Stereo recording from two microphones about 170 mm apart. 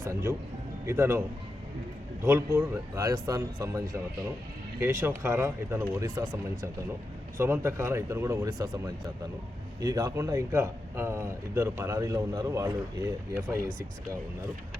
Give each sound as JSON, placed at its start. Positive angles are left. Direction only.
{"t": 0.0, "sound": "speech", "side_deg": -15}
{"t": 2.2, "sound": "speech", "side_deg": -15}